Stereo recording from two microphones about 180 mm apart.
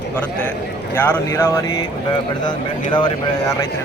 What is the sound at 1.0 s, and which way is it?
Speech, 15° left (ahead or behind).